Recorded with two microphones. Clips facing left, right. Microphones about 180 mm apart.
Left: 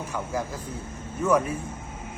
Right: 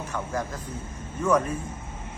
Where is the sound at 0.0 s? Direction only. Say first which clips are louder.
Even; 10° left (ahead or behind).